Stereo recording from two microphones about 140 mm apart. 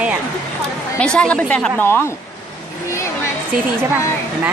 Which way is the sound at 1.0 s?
5° left (ahead or behind).